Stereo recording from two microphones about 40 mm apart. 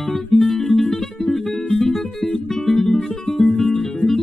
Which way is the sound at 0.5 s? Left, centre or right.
Centre.